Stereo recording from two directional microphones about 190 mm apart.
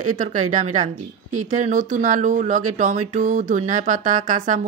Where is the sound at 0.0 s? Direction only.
40° right (ahead or behind).